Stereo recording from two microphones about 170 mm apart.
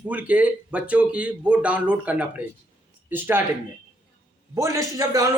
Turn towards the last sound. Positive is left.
turn(degrees=-20)  # may be behind; listen again after turning